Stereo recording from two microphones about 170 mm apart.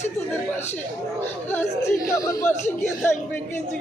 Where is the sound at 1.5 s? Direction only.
15° left (ahead or behind).